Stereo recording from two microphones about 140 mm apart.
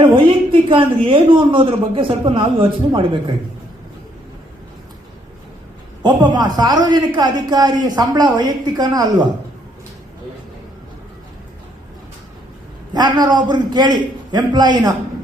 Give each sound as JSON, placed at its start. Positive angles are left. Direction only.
{"t": 0.0, "sound": "speech", "side_deg": -35}
{"t": 6.0, "sound": "a man's voice", "side_deg": -30}
{"t": 12.9, "sound": "speech", "side_deg": -30}